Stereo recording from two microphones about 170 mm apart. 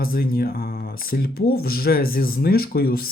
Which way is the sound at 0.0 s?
60° left (ahead or behind).